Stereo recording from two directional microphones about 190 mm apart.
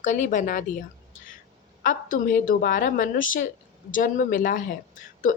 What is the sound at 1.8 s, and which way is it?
A woman's voice, 45° left (ahead or behind).